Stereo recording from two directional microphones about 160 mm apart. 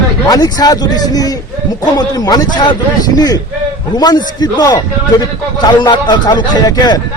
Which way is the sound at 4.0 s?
25° left (ahead or behind).